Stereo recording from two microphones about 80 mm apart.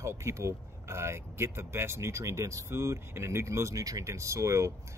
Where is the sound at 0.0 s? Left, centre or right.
Right.